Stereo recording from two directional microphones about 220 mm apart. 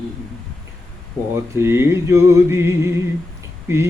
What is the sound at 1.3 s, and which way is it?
Mantra, 10° right (ahead or behind).